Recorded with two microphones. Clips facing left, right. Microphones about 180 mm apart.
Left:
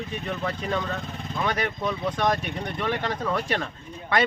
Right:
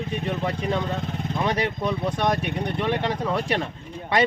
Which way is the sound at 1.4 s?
30° right (ahead or behind).